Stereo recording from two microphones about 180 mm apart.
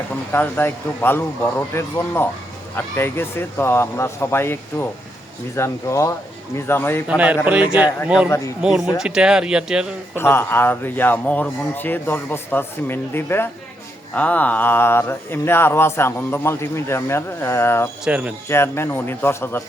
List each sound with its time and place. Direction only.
0.3 s speech: 10° left (ahead or behind)
7.1 s speech: 5° right (ahead or behind)
10.2 s speech: 15° left (ahead or behind)
18.0 s speech: 10° right (ahead or behind)
18.4 s speech: 15° left (ahead or behind)